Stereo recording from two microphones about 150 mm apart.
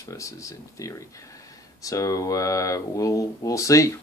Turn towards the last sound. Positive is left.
turn(degrees=20)  # may be behind; listen again after turning